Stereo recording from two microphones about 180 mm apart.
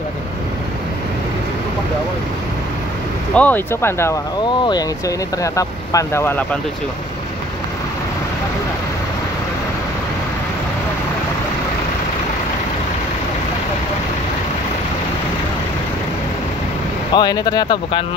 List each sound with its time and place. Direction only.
3.3 s speech: 10° left (ahead or behind)
17.1 s speech: 25° left (ahead or behind)